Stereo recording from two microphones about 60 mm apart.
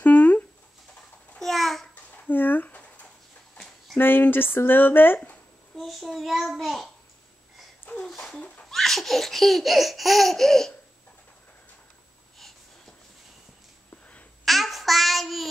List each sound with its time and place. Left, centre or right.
0.0 s a sound: left
1.4 s babbling: centre
2.2 s speech: left
4.0 s speech: left
5.8 s laughter: centre
8.1 s a sound: centre
8.4 s a sound: centre
8.6 s laughter: centre
14.4 s child singing: centre